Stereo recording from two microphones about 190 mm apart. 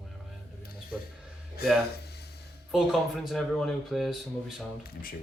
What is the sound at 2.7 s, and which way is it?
Speech, centre (ahead or behind).